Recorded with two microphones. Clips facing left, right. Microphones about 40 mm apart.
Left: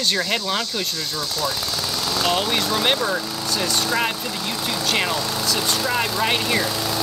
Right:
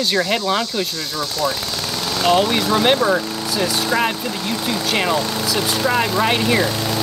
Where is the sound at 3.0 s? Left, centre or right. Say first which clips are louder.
Right 5 dB; right.